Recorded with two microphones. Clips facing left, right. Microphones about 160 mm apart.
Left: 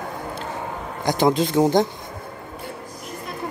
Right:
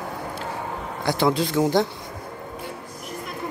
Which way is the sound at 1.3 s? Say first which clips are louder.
Left 4 dB; 20° left (ahead or behind).